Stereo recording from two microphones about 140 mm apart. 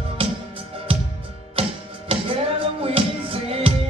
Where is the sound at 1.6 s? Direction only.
40° right (ahead or behind).